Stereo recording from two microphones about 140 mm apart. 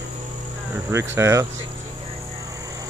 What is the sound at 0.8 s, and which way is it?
Speech, 20° right (ahead or behind).